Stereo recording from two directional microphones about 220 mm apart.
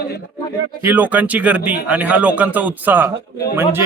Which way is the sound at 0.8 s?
10° right (ahead or behind).